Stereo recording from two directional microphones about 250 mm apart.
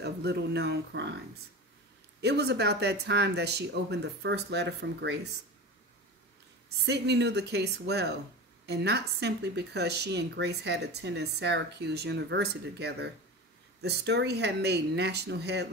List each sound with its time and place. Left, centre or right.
0.0 s speech: right
2.2 s speech: right
6.7 s speech: right